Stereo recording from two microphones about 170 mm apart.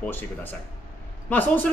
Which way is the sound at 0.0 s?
10° left (ahead or behind).